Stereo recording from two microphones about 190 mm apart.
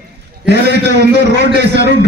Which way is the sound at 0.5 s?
65° right (ahead or behind).